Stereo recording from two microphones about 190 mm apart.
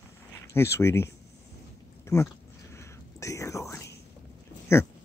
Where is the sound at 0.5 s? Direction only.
15° left (ahead or behind).